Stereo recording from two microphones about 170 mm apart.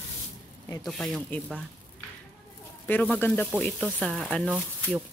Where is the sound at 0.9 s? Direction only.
Centre (ahead or behind).